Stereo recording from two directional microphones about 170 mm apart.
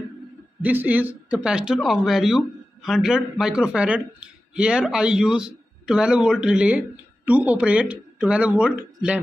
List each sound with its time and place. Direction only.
0.6 s speech: 10° right (ahead or behind)